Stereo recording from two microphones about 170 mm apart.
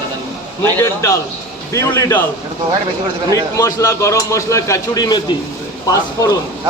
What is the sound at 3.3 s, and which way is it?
Speech, 20° left (ahead or behind).